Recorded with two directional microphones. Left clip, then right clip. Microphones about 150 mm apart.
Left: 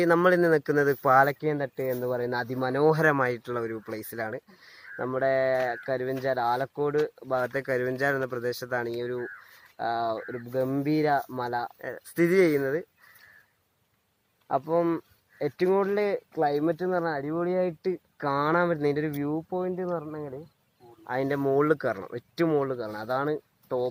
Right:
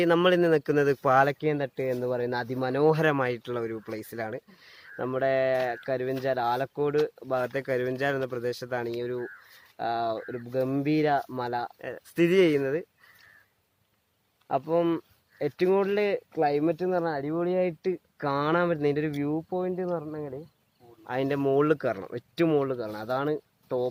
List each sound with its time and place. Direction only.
0.0 s speech: 10° right (ahead or behind)
2.0 s speech: 5° right (ahead or behind)
14.4 s speech: 5° right (ahead or behind)
19.6 s speech: 20° right (ahead or behind)